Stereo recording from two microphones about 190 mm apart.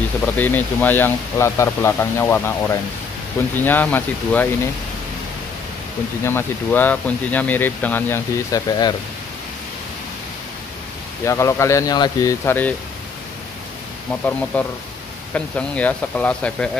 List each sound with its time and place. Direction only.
0.4 s speech: 10° left (ahead or behind)
6.2 s speech: 10° left (ahead or behind)
11.2 s speech: 15° left (ahead or behind)
14.2 s speech: 10° left (ahead or behind)